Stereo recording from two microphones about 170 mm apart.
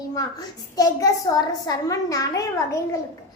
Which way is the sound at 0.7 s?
20° left (ahead or behind).